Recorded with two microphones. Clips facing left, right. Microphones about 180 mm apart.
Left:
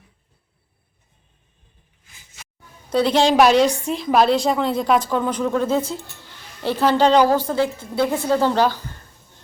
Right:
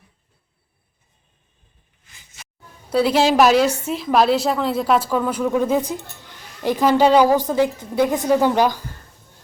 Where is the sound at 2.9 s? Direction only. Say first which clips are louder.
Even; 5° right (ahead or behind).